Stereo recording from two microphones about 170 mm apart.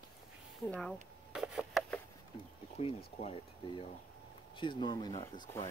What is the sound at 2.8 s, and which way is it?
Speech, 40° left (ahead or behind).